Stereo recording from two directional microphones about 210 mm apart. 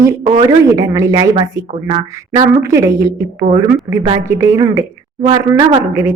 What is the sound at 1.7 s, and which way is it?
Speech, 30° right (ahead or behind).